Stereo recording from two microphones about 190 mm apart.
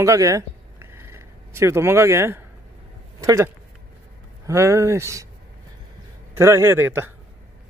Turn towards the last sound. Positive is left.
turn(degrees=-10)  # may be behind; listen again after turning